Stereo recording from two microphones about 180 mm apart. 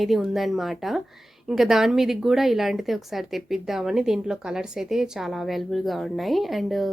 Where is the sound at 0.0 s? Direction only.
Centre (ahead or behind).